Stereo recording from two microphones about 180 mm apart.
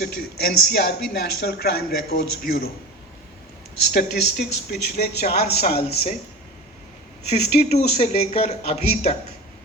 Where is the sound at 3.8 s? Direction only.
65° left (ahead or behind).